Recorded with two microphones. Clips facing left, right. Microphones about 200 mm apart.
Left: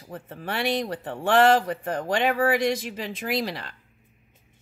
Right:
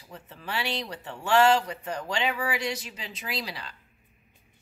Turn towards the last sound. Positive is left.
turn(degrees=50)  # may be behind; listen again after turning